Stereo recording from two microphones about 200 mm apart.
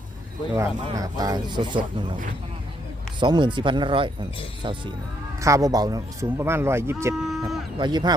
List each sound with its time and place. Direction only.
0.5 s speech: 15° right (ahead or behind)
3.2 s speech: 25° right (ahead or behind)
5.4 s speech: 15° right (ahead or behind)
7.2 s a sound: centre (ahead or behind)
7.4 s speech: 20° right (ahead or behind)